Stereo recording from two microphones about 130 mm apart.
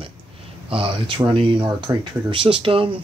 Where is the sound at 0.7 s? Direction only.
45° right (ahead or behind).